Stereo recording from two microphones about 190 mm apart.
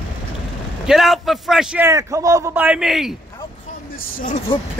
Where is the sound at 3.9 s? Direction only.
45° left (ahead or behind).